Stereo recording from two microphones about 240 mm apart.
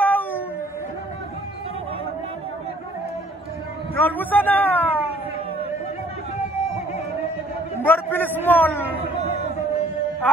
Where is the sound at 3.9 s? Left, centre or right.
Centre.